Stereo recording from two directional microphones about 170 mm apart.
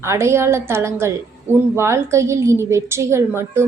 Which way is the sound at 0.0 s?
15° right (ahead or behind).